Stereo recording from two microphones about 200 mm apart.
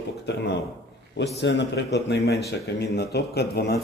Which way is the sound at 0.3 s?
60° left (ahead or behind).